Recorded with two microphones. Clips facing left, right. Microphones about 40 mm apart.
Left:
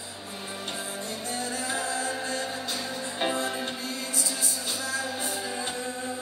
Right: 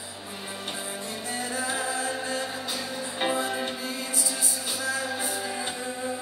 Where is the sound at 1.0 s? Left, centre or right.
Centre.